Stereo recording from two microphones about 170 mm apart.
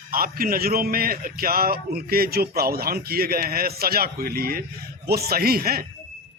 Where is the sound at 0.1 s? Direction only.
60° right (ahead or behind).